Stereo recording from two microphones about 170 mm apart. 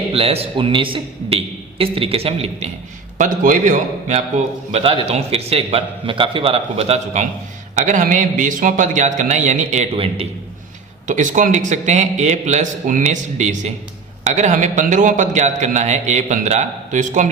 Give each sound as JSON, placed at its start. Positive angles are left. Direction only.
{"t": 0.1, "sound": "a man's voice", "side_deg": -35}
{"t": 3.2, "sound": "a man's voice", "side_deg": -50}
{"t": 4.7, "sound": "a man's voice", "side_deg": -35}
{"t": 11.0, "sound": "a man's voice", "side_deg": -50}